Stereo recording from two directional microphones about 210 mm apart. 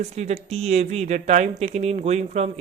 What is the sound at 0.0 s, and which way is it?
Speech, 30° right (ahead or behind).